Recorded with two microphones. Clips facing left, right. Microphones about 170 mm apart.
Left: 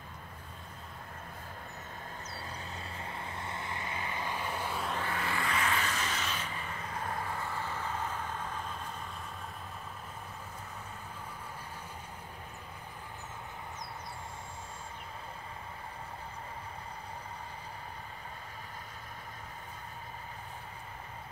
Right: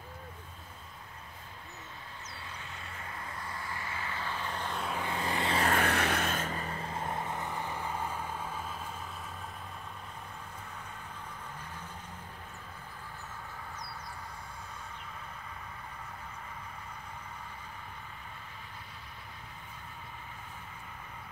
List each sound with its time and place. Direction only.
3.0 s vehicle: 25° left (ahead or behind); by 4.8 s 10° left (ahead or behind)
5.0 s vehicle: 20° right (ahead or behind)
5.7 s a sound: 60° right (ahead or behind); by 6.8 s 40° right (ahead or behind)
6.9 s vehicle: 25° right (ahead or behind); by 8.7 s 5° right (ahead or behind)